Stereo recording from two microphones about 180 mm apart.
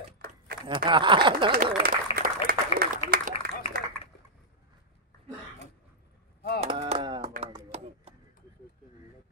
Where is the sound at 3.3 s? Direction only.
35° left (ahead or behind).